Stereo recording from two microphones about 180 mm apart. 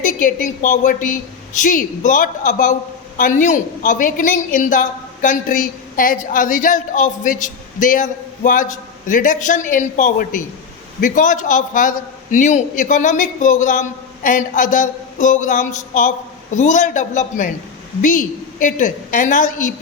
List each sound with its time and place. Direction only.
0.0 s a woman's voice: 45° left (ahead or behind)